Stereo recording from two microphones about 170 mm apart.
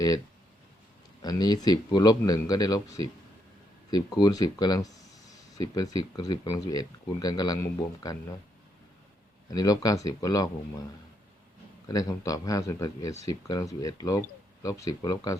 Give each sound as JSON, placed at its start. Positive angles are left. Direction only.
{"t": 1.2, "sound": "speech", "side_deg": 25}
{"t": 3.8, "sound": "speech", "side_deg": 25}
{"t": 9.5, "sound": "speech", "side_deg": 20}
{"t": 11.9, "sound": "speech", "side_deg": 20}